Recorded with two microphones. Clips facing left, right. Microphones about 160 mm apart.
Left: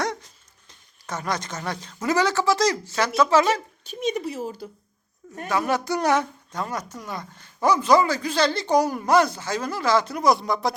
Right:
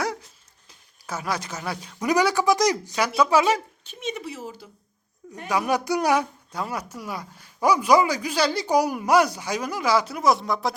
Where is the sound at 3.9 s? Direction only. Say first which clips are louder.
Left 6 dB; 40° left (ahead or behind).